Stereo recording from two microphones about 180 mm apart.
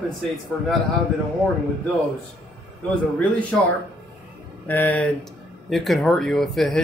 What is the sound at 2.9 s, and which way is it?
Speech, 5° left (ahead or behind).